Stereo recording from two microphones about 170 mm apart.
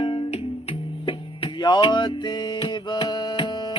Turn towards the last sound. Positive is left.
turn(degrees=30)  # may be behind; listen again after turning